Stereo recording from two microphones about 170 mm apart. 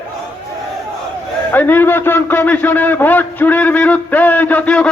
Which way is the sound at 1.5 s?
10° left (ahead or behind).